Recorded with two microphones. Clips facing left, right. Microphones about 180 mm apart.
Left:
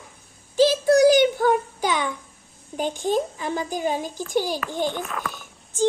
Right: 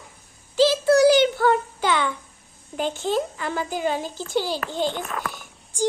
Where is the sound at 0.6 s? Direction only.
20° left (ahead or behind).